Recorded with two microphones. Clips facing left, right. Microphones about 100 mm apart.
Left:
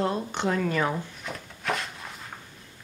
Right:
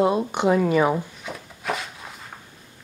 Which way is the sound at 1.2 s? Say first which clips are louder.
Right 2 dB; 5° right (ahead or behind).